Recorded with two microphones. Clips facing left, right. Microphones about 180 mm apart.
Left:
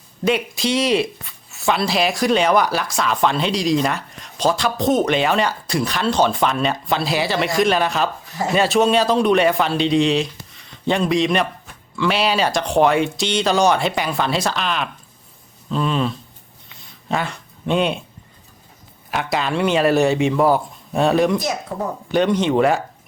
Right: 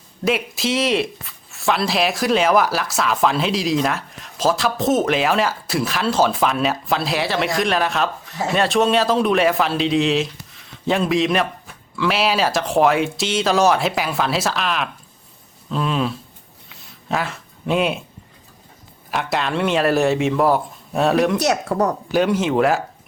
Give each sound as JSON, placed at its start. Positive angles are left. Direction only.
{"t": 0.3, "sound": "speech", "side_deg": 0}
{"t": 16.6, "sound": "a sound", "side_deg": -5}
{"t": 19.1, "sound": "speech", "side_deg": 0}
{"t": 21.3, "sound": "speech", "side_deg": -75}
{"t": 22.1, "sound": "speech", "side_deg": -5}